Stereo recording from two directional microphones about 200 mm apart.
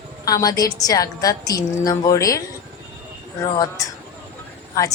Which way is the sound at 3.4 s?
15° left (ahead or behind).